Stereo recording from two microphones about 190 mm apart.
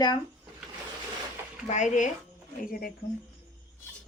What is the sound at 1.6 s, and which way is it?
Speech, 40° left (ahead or behind).